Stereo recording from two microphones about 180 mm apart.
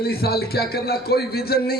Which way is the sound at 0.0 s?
60° left (ahead or behind).